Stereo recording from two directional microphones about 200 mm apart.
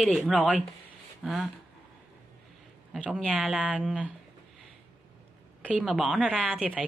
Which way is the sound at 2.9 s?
5° right (ahead or behind).